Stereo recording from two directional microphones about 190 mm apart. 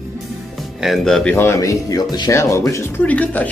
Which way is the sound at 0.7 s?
Centre (ahead or behind).